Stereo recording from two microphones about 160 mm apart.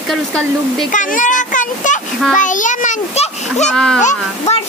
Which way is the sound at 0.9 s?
50° left (ahead or behind).